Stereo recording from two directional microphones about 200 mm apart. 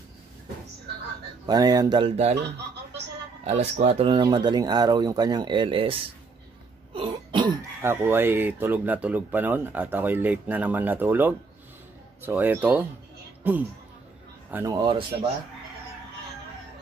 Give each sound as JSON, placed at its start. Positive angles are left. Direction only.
{"t": 1.4, "sound": "speech", "side_deg": -20}
{"t": 3.4, "sound": "a man's voice", "side_deg": -30}